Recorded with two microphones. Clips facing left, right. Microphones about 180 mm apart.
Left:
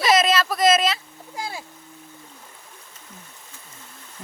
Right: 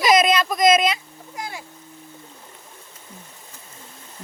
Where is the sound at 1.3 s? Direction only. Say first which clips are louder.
Left 1 dB; 30° left (ahead or behind).